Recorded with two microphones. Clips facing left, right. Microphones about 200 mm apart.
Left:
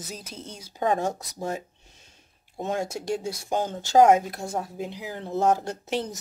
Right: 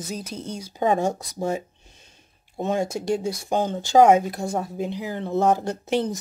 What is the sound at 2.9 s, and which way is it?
Speech, centre (ahead or behind).